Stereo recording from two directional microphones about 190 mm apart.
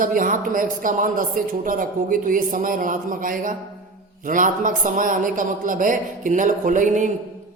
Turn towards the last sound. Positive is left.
turn(degrees=-40)  # may be behind; listen again after turning